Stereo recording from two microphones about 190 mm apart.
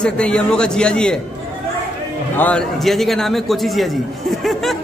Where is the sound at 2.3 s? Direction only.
5° left (ahead or behind).